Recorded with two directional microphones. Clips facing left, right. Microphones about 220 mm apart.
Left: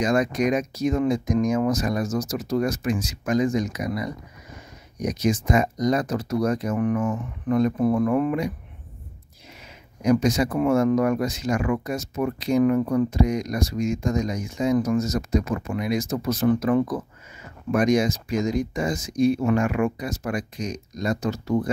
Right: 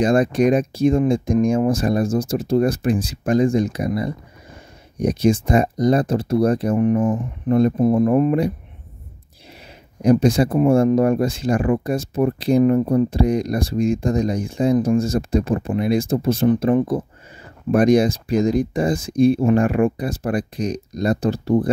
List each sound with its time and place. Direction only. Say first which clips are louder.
0.0 s speech: right 5 dB; 30° right (ahead or behind)
10.0 s speech: right 5 dB; 30° right (ahead or behind)